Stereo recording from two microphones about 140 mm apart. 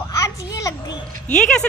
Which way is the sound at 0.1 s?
20° left (ahead or behind).